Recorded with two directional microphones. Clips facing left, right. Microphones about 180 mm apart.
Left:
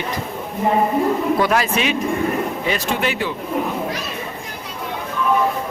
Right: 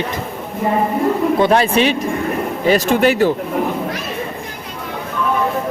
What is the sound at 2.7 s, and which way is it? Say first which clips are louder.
Speech: right 12 dB; 45° right (ahead or behind).